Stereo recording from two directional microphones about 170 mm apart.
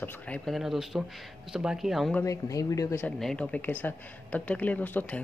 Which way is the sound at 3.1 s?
5° left (ahead or behind).